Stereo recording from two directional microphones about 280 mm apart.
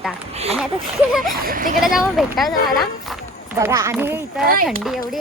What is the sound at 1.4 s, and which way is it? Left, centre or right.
Speech, right.